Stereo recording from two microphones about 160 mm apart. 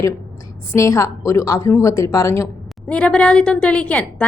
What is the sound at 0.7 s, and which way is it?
A woman's voice, 20° left (ahead or behind).